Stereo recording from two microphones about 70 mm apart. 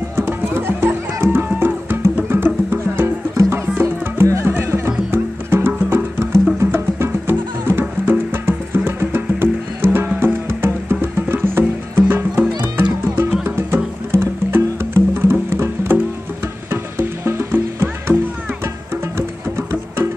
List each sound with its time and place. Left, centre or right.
0.1 s music: right
19.1 s music: right